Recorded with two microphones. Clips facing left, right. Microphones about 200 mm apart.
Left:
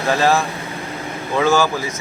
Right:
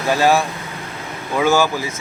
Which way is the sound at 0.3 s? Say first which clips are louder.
Right 3 dB; centre (ahead or behind).